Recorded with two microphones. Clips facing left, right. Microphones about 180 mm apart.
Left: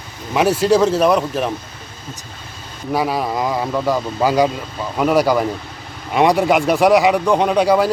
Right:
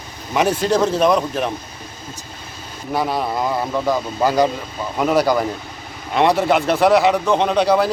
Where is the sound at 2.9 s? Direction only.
10° left (ahead or behind).